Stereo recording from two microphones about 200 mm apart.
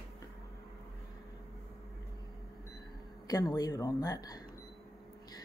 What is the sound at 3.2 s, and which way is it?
Speech, 20° left (ahead or behind).